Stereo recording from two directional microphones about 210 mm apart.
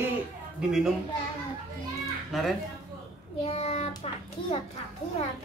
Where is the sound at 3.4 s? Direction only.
30° left (ahead or behind).